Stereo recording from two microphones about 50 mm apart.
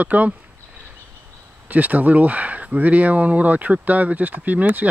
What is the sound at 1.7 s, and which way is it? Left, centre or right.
Speech, right.